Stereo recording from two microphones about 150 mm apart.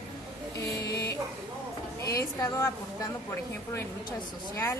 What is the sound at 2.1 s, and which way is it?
Speech, 25° left (ahead or behind).